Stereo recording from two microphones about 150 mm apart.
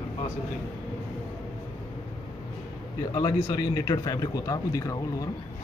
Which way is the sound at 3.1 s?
25° left (ahead or behind).